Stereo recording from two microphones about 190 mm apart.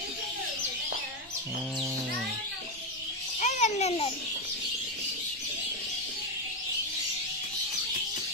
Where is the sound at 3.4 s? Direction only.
40° left (ahead or behind).